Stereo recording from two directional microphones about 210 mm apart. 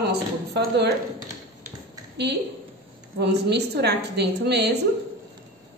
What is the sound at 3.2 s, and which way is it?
A woman's voice, 55° right (ahead or behind).